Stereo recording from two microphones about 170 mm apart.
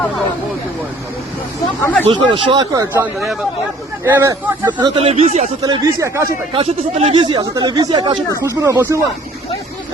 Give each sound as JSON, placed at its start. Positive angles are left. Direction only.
{"t": 1.8, "sound": "speech", "side_deg": 10}
{"t": 2.0, "sound": "speech", "side_deg": -30}
{"t": 4.9, "sound": "speech", "side_deg": -35}
{"t": 5.6, "sound": "speech", "side_deg": -20}
{"t": 6.5, "sound": "speech", "side_deg": -35}